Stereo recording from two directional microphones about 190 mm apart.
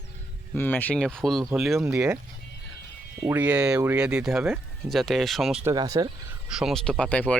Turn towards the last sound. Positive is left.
turn(degrees=5)  # may be behind; listen again after turning